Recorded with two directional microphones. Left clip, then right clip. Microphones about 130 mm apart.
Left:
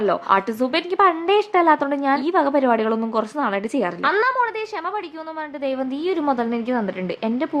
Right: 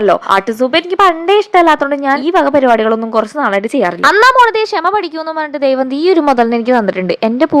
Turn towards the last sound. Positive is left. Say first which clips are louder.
# right 12 dB
turn(degrees=-45)  # may be behind; listen again after turning